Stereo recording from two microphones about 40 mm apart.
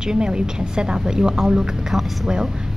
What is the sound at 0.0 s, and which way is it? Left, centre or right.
A woman's voice, right.